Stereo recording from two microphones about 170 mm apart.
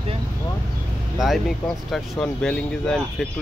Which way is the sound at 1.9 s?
5° left (ahead or behind).